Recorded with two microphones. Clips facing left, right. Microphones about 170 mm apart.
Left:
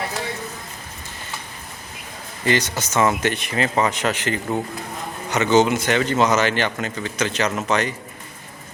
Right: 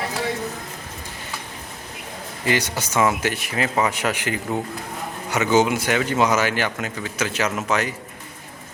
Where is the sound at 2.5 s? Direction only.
10° right (ahead or behind).